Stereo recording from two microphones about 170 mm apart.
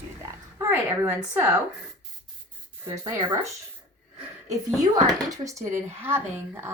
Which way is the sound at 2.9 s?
25° right (ahead or behind).